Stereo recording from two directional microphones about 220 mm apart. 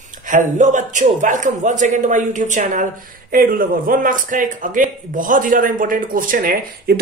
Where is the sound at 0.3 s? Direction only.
35° right (ahead or behind).